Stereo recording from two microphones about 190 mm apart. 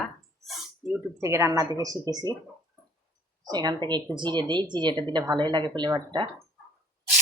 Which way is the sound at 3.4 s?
20° right (ahead or behind).